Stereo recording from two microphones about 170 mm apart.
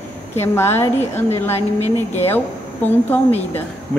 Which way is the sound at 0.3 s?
15° left (ahead or behind).